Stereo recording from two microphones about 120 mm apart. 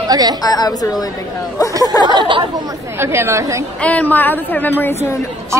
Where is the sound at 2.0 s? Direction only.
40° right (ahead or behind).